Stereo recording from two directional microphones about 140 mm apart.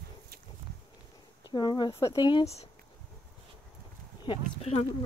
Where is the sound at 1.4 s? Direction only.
30° left (ahead or behind).